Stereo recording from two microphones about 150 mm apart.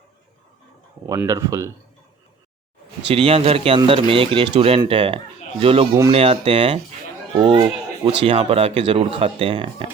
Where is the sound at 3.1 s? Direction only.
40° right (ahead or behind).